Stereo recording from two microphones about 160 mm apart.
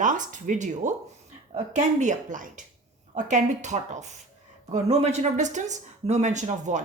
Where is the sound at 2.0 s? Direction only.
50° right (ahead or behind).